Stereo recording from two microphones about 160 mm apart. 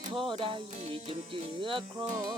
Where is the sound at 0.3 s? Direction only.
35° right (ahead or behind).